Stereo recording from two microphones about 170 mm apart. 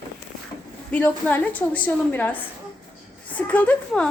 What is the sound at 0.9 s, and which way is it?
Speech, 10° left (ahead or behind).